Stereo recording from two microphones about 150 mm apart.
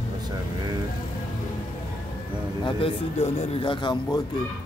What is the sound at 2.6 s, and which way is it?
A man's voice, 45° left (ahead or behind).